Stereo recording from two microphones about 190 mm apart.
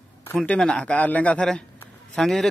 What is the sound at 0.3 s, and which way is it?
A man's voice, 5° left (ahead or behind).